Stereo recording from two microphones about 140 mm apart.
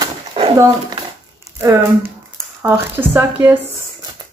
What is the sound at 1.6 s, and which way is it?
Speech, 20° right (ahead or behind).